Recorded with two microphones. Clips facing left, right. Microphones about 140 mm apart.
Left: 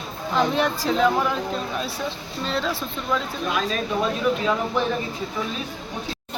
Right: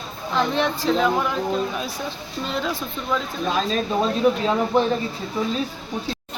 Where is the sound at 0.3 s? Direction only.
5° left (ahead or behind).